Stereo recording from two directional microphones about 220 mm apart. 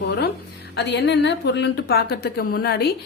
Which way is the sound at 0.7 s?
50° left (ahead or behind).